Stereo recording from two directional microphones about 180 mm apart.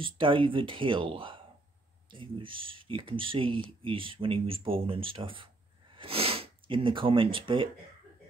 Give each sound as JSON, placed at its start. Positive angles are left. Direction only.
{"t": 0.0, "sound": "speech", "side_deg": -30}